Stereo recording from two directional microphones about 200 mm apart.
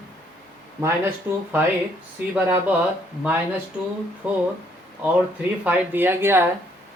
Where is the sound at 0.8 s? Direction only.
10° right (ahead or behind).